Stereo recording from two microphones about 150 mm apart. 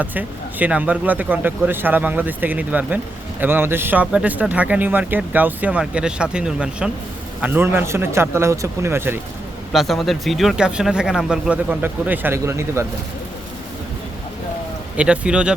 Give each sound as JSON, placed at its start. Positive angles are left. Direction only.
{"t": 0.0, "sound": "a man's voice", "side_deg": -10}
{"t": 9.7, "sound": "speech", "side_deg": 0}
{"t": 14.9, "sound": "a man's voice", "side_deg": -10}